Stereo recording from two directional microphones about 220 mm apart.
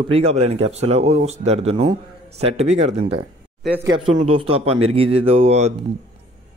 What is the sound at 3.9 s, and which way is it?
Speech, 20° right (ahead or behind).